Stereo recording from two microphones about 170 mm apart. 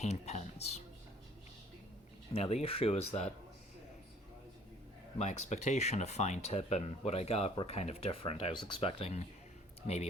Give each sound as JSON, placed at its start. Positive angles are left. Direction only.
{"t": 0.0, "sound": "speech", "side_deg": 40}
{"t": 2.3, "sound": "speech", "side_deg": 35}
{"t": 5.1, "sound": "speech", "side_deg": 40}